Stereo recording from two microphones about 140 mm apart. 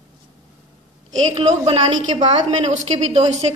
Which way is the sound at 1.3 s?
45° right (ahead or behind).